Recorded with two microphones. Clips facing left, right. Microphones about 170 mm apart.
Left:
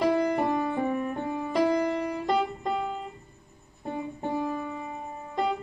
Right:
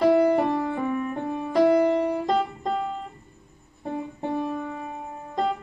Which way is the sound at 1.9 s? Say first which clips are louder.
Right 6 dB; 30° right (ahead or behind).